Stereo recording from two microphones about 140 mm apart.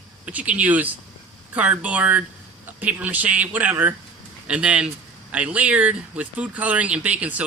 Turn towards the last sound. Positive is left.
turn(degrees=-10)  # may be behind; listen again after turning